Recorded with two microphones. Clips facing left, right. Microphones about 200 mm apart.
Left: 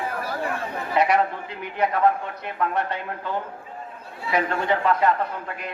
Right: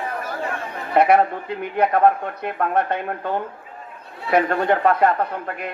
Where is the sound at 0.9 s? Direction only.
55° right (ahead or behind).